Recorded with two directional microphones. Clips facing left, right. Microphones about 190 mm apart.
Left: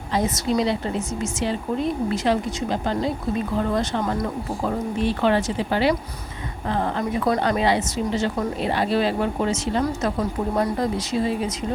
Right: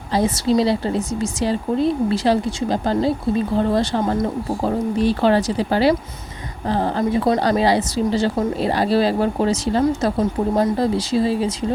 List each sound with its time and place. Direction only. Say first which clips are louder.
0.1 s a woman's voice: right 4 dB; 30° right (ahead or behind)
10.2 s a woman's voice: right 4 dB; 25° right (ahead or behind)